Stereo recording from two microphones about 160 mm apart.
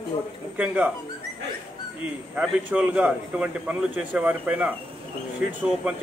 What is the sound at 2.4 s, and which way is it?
A man's voice, 10° right (ahead or behind).